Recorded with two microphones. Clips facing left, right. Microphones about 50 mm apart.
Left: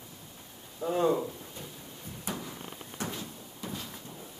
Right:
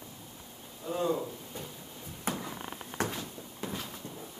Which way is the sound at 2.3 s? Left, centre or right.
Right.